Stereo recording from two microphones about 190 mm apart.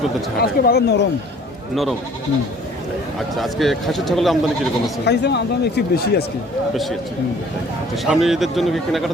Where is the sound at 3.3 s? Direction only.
Centre (ahead or behind).